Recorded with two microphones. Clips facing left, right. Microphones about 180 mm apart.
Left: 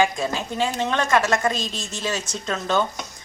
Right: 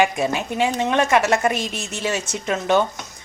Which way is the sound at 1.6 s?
10° right (ahead or behind).